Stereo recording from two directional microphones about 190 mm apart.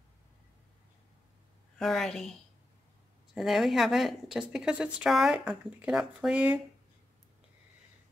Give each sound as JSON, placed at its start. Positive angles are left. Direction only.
{"t": 1.8, "sound": "speech", "side_deg": 0}
{"t": 3.3, "sound": "speech", "side_deg": 0}